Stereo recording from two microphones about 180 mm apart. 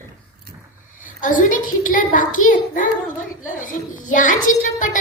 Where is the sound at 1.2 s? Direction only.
45° left (ahead or behind).